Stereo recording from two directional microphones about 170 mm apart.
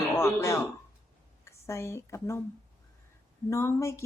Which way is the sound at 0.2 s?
15° left (ahead or behind).